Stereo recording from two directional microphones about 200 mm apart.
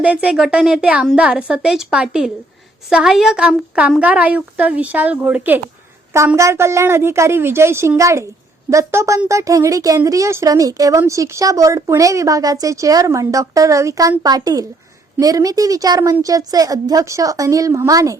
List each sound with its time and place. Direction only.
0.0 s a woman's voice: 5° right (ahead or behind)